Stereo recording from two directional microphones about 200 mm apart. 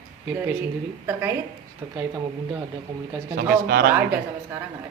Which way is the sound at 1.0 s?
10° right (ahead or behind).